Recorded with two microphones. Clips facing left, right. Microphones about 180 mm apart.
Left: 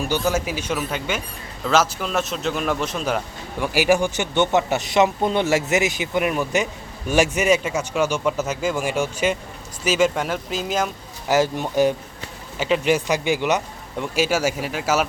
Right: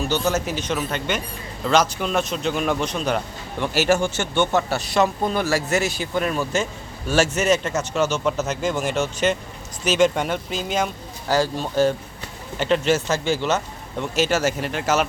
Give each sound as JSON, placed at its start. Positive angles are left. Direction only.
{"t": 0.0, "sound": "a man's voice", "side_deg": 10}
{"t": 11.3, "sound": "speech", "side_deg": 20}
{"t": 12.5, "sound": "speech", "side_deg": 5}